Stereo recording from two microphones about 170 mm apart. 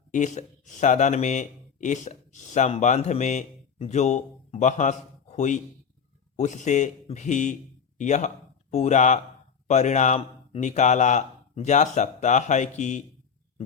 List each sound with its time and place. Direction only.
0.1 s speech: 45° left (ahead or behind)